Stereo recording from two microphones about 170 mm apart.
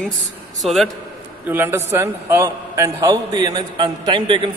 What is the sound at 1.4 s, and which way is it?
A man's voice, 10° right (ahead or behind).